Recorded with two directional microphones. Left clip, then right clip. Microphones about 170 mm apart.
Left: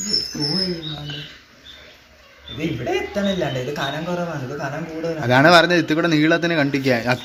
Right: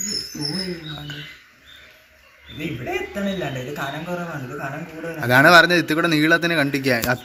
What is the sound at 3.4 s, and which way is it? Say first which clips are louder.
Speech: left 4 dB; 20° left (ahead or behind).